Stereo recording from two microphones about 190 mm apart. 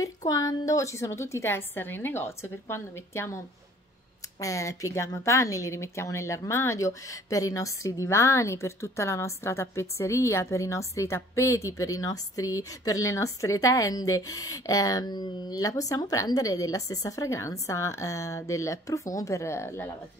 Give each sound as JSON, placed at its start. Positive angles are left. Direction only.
{"t": 0.0, "sound": "speech", "side_deg": 20}
{"t": 4.4, "sound": "speech", "side_deg": 15}